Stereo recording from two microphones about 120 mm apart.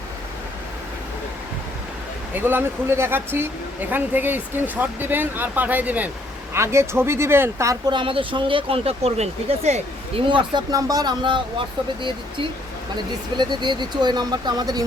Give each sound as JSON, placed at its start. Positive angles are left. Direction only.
{"t": 2.3, "sound": "speech", "side_deg": -15}
{"t": 7.9, "sound": "speech", "side_deg": -45}
{"t": 10.2, "sound": "speech", "side_deg": -40}
{"t": 13.3, "sound": "speech", "side_deg": -40}